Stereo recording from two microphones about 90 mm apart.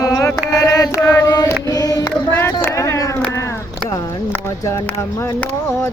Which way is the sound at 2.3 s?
25° left (ahead or behind).